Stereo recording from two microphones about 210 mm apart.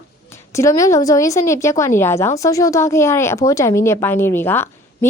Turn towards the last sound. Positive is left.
turn(degrees=10)  # may be behind; listen again after turning